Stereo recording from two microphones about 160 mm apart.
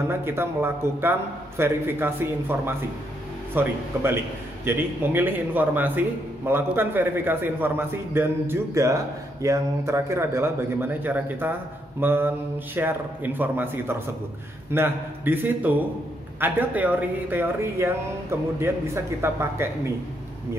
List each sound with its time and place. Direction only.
0.1 s a man's voice: 15° right (ahead or behind)